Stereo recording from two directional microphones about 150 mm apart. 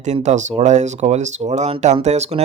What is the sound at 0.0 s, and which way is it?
Speech, 50° right (ahead or behind).